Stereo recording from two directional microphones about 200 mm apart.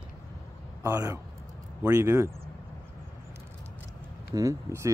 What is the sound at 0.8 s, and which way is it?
Speech, 15° right (ahead or behind).